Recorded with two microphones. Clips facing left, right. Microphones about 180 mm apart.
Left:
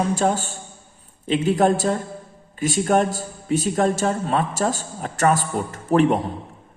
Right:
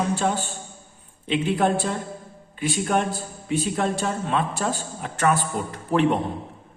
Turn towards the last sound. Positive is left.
turn(degrees=45)  # may be behind; listen again after turning